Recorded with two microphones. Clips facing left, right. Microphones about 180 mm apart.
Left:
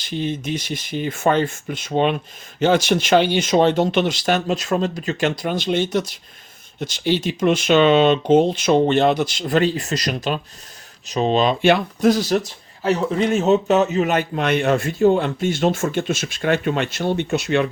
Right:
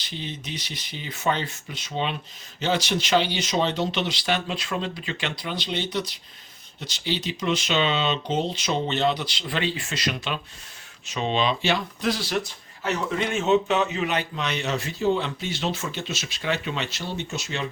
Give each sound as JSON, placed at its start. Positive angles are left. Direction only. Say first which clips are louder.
{"t": 0.0, "sound": "speech", "louder": "left 11 dB", "side_deg": 50}